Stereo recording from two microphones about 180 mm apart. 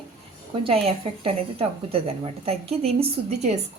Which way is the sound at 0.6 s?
30° right (ahead or behind).